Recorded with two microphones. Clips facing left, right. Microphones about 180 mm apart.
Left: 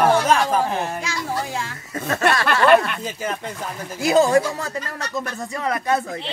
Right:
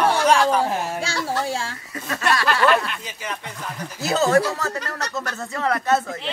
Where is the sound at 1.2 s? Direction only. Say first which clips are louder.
Right 1 dB; 30° right (ahead or behind).